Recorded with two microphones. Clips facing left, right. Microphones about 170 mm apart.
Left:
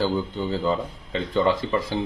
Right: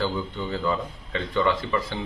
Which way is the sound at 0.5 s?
30° left (ahead or behind).